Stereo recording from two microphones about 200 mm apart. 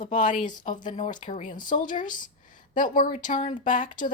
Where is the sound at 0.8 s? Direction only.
40° left (ahead or behind).